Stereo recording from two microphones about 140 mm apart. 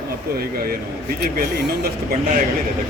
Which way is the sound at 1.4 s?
90° right.